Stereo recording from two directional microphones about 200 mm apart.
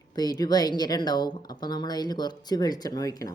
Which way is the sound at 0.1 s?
20° left (ahead or behind).